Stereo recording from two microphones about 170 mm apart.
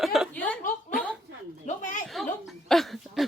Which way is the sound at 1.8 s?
50° left (ahead or behind).